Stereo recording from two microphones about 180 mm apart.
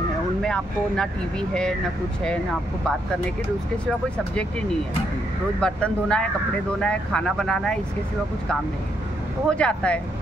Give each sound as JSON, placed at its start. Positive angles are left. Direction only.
{"t": 0.4, "sound": "speech", "side_deg": 5}
{"t": 5.6, "sound": "speech", "side_deg": 5}
{"t": 9.5, "sound": "speech", "side_deg": 5}